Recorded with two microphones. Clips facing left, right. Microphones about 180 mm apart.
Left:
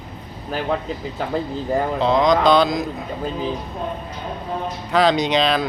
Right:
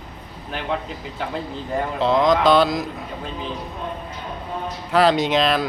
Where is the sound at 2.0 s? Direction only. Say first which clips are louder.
Even; 5° right (ahead or behind).